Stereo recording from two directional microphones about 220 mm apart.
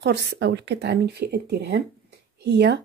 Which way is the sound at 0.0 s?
50° right (ahead or behind).